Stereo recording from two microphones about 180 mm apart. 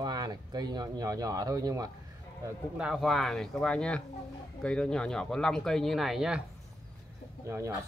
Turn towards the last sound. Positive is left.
turn(degrees=-15)  # may be behind; listen again after turning